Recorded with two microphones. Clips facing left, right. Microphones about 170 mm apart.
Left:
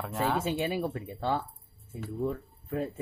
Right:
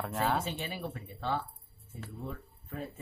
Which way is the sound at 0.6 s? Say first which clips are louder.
Left 8 dB; 50° left (ahead or behind).